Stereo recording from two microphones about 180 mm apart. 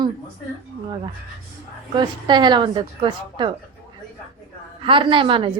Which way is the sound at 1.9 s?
25° right (ahead or behind).